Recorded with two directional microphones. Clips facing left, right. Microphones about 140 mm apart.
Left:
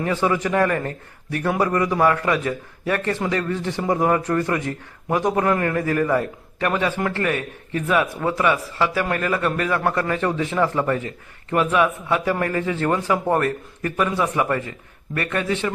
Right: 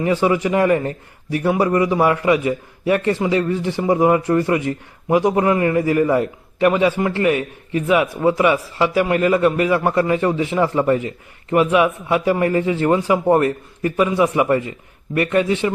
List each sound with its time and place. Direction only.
0.0 s a man's voice: 15° right (ahead or behind)